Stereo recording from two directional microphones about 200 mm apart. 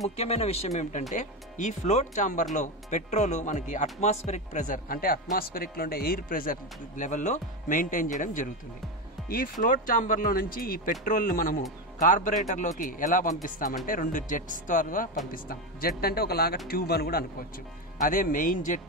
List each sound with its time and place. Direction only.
0.1 s speech: 30° left (ahead or behind)